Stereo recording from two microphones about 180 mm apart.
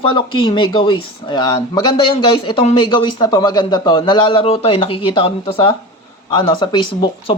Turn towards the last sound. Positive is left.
turn(degrees=25)  # may be behind; listen again after turning